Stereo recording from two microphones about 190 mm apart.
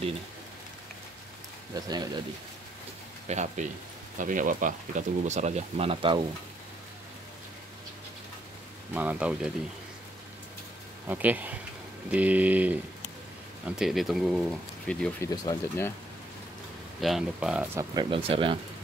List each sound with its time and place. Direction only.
1.8 s speech: 20° right (ahead or behind)
3.3 s speech: 40° right (ahead or behind)
8.9 s speech: 5° right (ahead or behind)
11.1 s speech: 10° right (ahead or behind)
13.7 s speech: centre (ahead or behind)
15.2 s speech: 20° left (ahead or behind)
17.0 s speech: centre (ahead or behind)
17.7 s speech: 25° right (ahead or behind)